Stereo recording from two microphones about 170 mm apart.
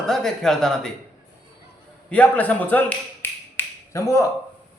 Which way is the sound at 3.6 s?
15° left (ahead or behind).